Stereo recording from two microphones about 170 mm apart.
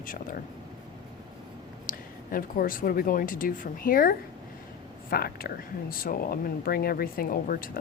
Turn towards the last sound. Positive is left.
turn(degrees=55)  # may be behind; listen again after turning